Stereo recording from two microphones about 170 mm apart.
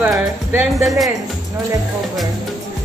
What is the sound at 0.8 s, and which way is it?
Speech, centre (ahead or behind).